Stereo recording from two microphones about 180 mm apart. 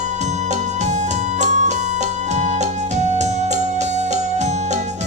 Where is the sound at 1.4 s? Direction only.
40° right (ahead or behind).